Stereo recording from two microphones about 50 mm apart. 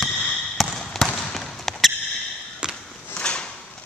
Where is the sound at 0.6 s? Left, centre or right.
Centre.